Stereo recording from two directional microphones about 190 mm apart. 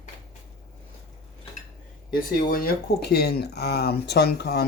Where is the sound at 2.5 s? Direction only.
50° left (ahead or behind).